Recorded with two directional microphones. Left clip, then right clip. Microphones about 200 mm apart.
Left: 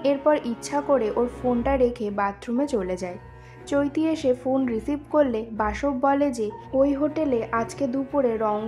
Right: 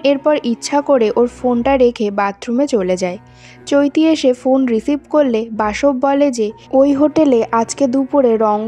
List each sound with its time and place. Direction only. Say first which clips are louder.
0.0 s speech: right 7 dB; 35° right (ahead or behind)